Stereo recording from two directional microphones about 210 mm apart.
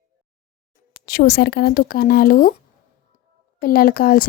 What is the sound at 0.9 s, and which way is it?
Speech, 45° left (ahead or behind).